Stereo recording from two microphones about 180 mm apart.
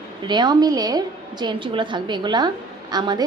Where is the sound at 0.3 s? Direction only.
25° right (ahead or behind).